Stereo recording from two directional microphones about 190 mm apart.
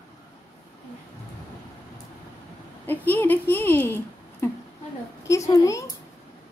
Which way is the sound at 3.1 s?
10° left (ahead or behind).